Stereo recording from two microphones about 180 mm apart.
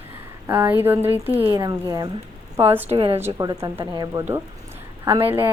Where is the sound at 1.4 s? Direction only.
30° right (ahead or behind); by 2.9 s 10° right (ahead or behind).